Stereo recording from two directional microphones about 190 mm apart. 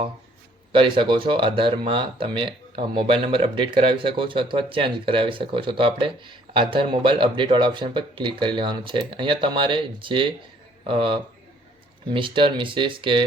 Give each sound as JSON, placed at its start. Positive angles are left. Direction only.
{"t": 0.7, "sound": "speech", "side_deg": -25}